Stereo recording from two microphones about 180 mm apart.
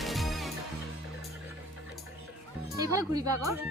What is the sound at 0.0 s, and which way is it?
Music, centre (ahead or behind).